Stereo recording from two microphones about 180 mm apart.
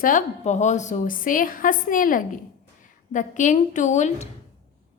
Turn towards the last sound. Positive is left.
turn(degrees=40)  # may be behind; listen again after turning